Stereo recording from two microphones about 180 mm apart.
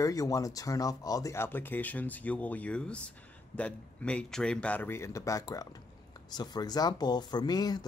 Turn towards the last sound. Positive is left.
turn(degrees=20)  # may be behind; listen again after turning